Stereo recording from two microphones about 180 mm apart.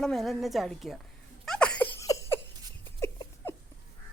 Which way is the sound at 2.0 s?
15° left (ahead or behind).